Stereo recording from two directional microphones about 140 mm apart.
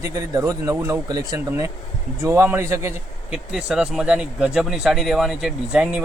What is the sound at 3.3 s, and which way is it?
Speech, 5° right (ahead or behind).